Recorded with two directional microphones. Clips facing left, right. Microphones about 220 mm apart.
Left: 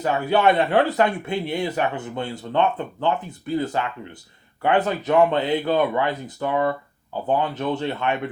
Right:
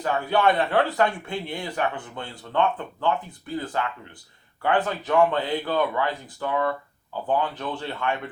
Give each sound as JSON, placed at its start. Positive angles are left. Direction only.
{"t": 0.0, "sound": "speech", "side_deg": 20}